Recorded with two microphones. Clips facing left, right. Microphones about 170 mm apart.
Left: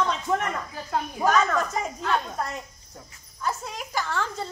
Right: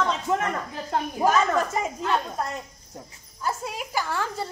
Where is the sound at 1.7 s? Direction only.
5° right (ahead or behind).